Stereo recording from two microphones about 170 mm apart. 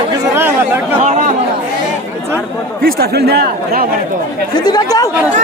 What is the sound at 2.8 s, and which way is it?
Speech, 60° right (ahead or behind).